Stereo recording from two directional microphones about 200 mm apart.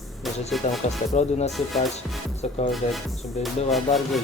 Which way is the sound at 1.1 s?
35° left (ahead or behind).